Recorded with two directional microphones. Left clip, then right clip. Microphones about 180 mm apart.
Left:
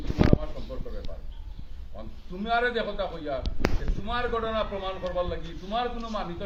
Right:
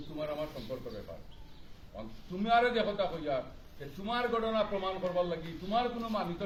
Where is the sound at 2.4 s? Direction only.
10° right (ahead or behind).